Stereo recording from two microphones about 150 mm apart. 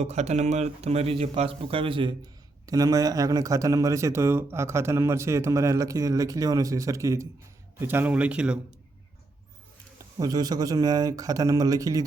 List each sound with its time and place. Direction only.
0.0 s speech: 45° right (ahead or behind)
2.6 s speech: 25° right (ahead or behind); by 8.5 s 10° right (ahead or behind)
10.2 s speech: 25° right (ahead or behind)